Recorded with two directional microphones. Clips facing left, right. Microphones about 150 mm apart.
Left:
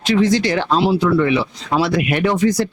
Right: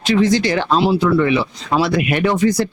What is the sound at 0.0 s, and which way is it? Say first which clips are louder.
Speech: even; 10° right (ahead or behind).